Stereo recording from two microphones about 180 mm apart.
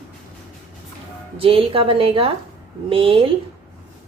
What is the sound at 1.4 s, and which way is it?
A woman's voice, 30° right (ahead or behind).